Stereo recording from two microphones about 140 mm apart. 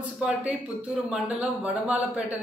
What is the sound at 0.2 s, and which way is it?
A man's voice, 10° right (ahead or behind).